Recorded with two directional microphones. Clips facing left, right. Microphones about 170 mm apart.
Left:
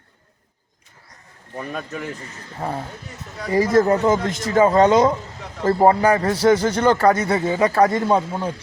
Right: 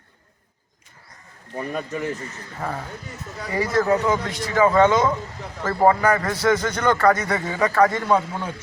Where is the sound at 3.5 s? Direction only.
40° left (ahead or behind).